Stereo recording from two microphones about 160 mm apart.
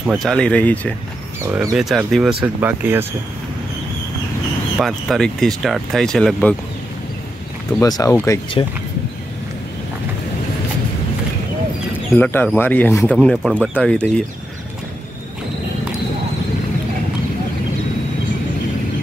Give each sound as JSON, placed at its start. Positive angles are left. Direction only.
{"t": 0.0, "sound": "speech", "side_deg": -5}
{"t": 0.3, "sound": "speech", "side_deg": 5}
{"t": 1.4, "sound": "speech", "side_deg": -15}
{"t": 1.8, "sound": "speech", "side_deg": 0}
{"t": 4.7, "sound": "speech", "side_deg": 0}
{"t": 7.8, "sound": "speech", "side_deg": 20}
{"t": 12.2, "sound": "speech", "side_deg": 10}